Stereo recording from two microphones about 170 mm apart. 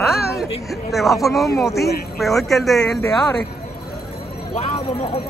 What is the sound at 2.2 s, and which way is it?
Speech, centre (ahead or behind).